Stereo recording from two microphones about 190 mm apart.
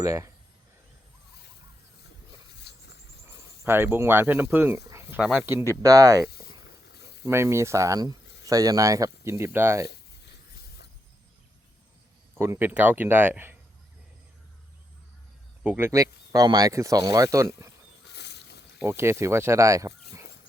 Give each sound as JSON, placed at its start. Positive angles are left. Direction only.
{"t": 0.0, "sound": "speech", "side_deg": -15}
{"t": 2.6, "sound": "a sound", "side_deg": 60}
{"t": 3.6, "sound": "speech", "side_deg": -10}
{"t": 7.3, "sound": "speech", "side_deg": -15}
{"t": 12.4, "sound": "speech", "side_deg": -10}
{"t": 15.6, "sound": "speech", "side_deg": -10}
{"t": 18.0, "sound": "boat", "side_deg": 65}
{"t": 18.8, "sound": "speech", "side_deg": -10}